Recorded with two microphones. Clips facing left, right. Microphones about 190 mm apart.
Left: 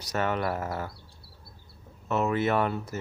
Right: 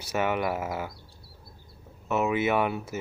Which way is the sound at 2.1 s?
5° right (ahead or behind).